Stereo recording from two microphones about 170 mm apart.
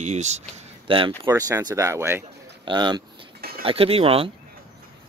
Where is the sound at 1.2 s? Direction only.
20° right (ahead or behind).